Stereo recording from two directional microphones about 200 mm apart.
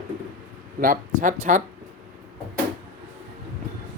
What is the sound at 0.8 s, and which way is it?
Speech, 40° right (ahead or behind).